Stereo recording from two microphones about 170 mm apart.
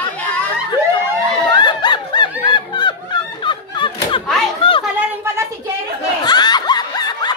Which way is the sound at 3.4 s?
30° left (ahead or behind).